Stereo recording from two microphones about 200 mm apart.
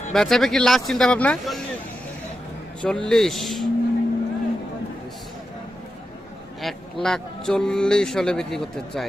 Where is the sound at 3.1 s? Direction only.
Centre (ahead or behind).